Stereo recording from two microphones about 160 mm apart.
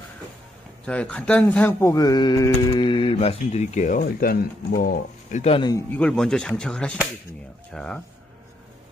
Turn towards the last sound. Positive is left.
turn(degrees=5)  # may be behind; listen again after turning